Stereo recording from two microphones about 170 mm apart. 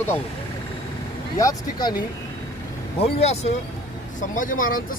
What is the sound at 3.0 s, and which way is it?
Speech, 40° left (ahead or behind).